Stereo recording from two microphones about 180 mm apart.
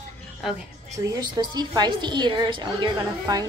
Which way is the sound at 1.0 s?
20° right (ahead or behind).